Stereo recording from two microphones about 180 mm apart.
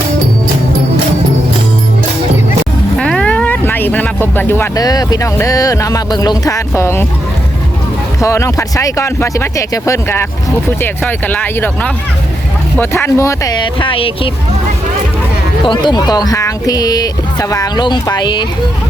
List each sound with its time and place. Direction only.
3.0 s vehicle: 5° left (ahead or behind)
3.7 s speech: 10° left (ahead or behind)
8.2 s speech: 15° left (ahead or behind)
15.6 s speech: 25° left (ahead or behind)